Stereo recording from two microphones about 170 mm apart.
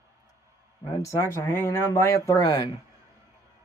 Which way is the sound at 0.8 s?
20° left (ahead or behind).